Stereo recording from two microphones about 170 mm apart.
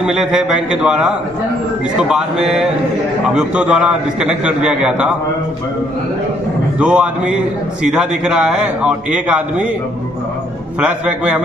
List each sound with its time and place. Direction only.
0.0 s a man's voice: centre (ahead or behind)
6.8 s a man's voice: 5° right (ahead or behind)
10.8 s a man's voice: 5° right (ahead or behind)